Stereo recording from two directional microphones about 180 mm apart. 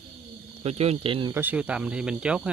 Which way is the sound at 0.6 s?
35° right (ahead or behind).